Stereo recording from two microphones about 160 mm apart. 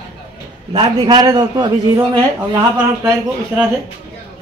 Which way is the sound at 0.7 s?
25° right (ahead or behind).